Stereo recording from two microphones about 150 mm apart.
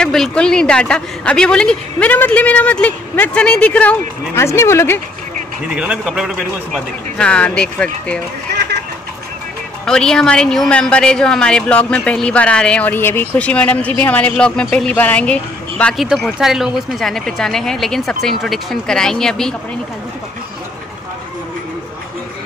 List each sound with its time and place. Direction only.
0.0 s a woman's voice: 5° left (ahead or behind)
5.8 s speech: 5° right (ahead or behind)
6.7 s a woman's voice: 5° left (ahead or behind)
9.8 s speech: 5° left (ahead or behind)